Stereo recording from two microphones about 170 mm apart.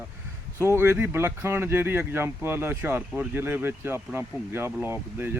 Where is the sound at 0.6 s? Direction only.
15° right (ahead or behind).